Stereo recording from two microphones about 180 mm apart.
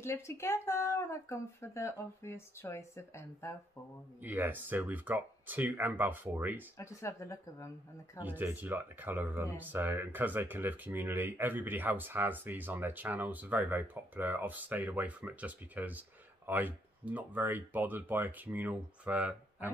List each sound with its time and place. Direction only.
0.0 s speech: 15° left (ahead or behind)
4.2 s speech: 10° right (ahead or behind)
6.8 s speech: 15° left (ahead or behind)
8.2 s speech: 10° right (ahead or behind)